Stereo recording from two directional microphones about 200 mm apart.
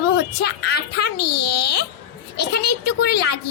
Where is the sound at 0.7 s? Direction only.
55° left (ahead or behind).